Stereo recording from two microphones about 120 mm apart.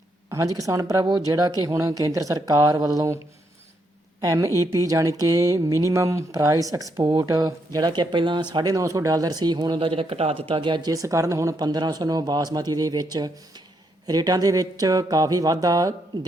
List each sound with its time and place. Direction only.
0.3 s speech: 25° right (ahead or behind)
4.2 s speech: 30° right (ahead or behind); by 10.4 s 55° right (ahead or behind)
10.5 s speech: 40° right (ahead or behind)